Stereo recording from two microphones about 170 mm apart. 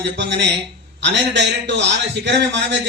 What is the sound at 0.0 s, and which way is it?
A man's voice, 90° right.